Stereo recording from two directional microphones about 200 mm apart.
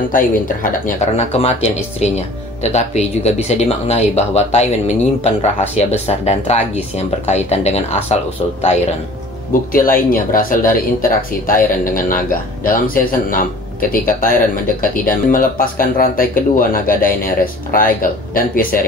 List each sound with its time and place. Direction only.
0.1 s speech: 45° left (ahead or behind)
9.5 s speech: 45° left (ahead or behind)